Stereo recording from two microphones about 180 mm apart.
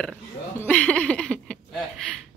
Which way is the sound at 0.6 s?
10° left (ahead or behind).